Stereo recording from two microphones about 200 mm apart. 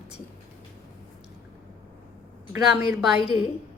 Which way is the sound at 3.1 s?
30° left (ahead or behind).